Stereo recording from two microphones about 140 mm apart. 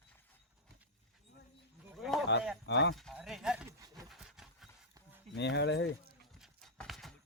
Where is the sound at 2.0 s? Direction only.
Centre (ahead or behind).